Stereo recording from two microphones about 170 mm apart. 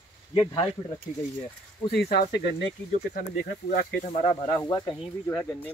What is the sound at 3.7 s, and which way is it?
Speech, 65° left (ahead or behind).